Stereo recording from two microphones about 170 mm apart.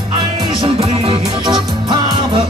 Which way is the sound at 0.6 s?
35° right (ahead or behind).